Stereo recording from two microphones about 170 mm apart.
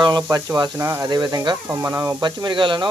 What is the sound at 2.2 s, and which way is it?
Speech, 25° right (ahead or behind).